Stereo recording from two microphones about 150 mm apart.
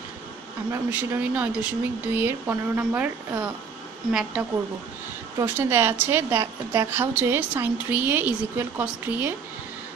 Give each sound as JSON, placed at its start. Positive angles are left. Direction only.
{"t": 0.7, "sound": "a woman's voice", "side_deg": -10}
{"t": 5.4, "sound": "a woman's voice", "side_deg": -15}